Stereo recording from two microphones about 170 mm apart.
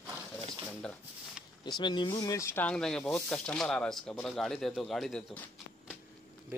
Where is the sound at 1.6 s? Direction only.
25° left (ahead or behind); by 6.0 s 5° left (ahead or behind).